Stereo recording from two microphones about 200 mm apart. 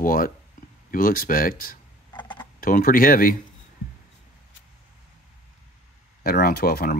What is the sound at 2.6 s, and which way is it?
Speech, 45° left (ahead or behind).